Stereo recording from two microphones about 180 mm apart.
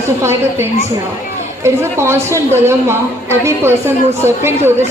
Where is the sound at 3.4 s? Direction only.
15° right (ahead or behind).